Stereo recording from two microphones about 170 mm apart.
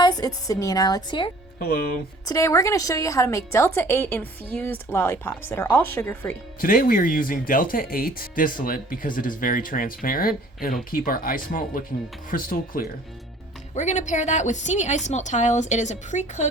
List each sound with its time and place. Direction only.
0.0 s a woman's voice: 25° left (ahead or behind)
1.5 s speech: 60° left (ahead or behind)
2.2 s a woman's voice: 20° left (ahead or behind)
6.6 s speech: 55° left (ahead or behind)
13.7 s a woman's voice: 45° left (ahead or behind)